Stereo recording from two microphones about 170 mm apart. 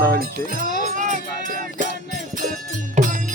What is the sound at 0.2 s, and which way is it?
Music, 55° right (ahead or behind).